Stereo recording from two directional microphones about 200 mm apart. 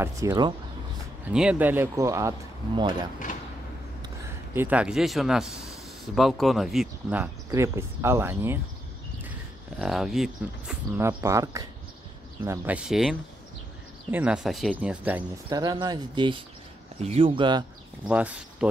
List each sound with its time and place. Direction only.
0.0 s speech: 15° right (ahead or behind)
1.3 s speech: 5° right (ahead or behind); by 3.1 s 25° right (ahead or behind)
4.6 s speech: 5° right (ahead or behind)
9.8 s speech: centre (ahead or behind)
15.5 s speech: 20° right (ahead or behind)
18.0 s speech: 5° right (ahead or behind)